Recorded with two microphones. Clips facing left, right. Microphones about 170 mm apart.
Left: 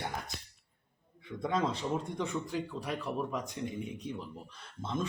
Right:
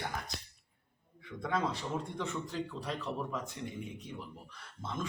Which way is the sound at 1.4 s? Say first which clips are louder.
Left 2 dB; 20° left (ahead or behind).